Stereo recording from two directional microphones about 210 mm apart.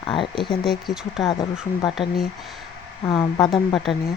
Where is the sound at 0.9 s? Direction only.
Centre (ahead or behind).